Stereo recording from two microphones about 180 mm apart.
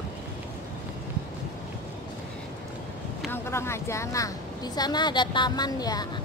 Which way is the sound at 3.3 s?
15° left (ahead or behind).